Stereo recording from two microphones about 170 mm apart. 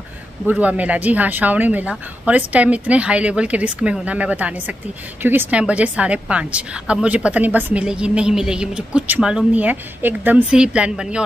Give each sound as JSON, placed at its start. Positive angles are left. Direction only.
{"t": 0.5, "sound": "a woman's voice", "side_deg": -10}